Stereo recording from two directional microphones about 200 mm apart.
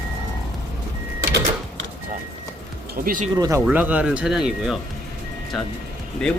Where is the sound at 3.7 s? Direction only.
10° right (ahead or behind).